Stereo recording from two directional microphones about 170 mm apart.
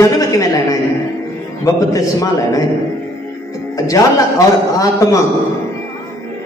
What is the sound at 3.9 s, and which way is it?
A man's voice, 20° left (ahead or behind).